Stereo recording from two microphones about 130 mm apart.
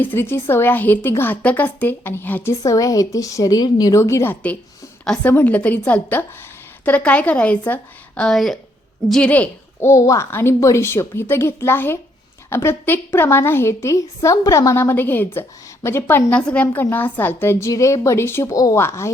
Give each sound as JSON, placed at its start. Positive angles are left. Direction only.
{"t": 0.0, "sound": "a woman's voice", "side_deg": 15}
{"t": 5.0, "sound": "a woman's voice", "side_deg": 5}